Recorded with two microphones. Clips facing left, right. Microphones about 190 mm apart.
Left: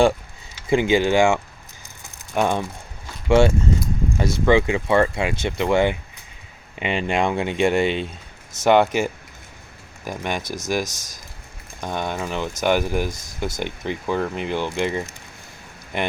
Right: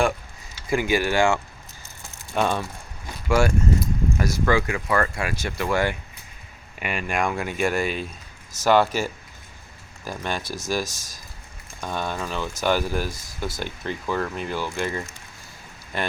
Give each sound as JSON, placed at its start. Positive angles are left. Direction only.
{"t": 0.7, "sound": "speech", "side_deg": 20}